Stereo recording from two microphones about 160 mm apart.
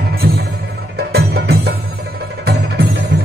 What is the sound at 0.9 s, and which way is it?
Music, 90° right.